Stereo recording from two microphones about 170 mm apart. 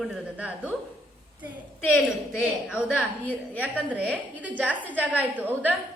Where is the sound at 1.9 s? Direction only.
5° right (ahead or behind).